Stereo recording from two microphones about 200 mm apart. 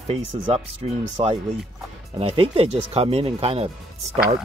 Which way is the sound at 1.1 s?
25° right (ahead or behind).